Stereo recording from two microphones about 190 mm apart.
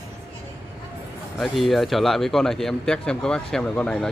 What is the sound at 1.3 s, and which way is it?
Speech, centre (ahead or behind).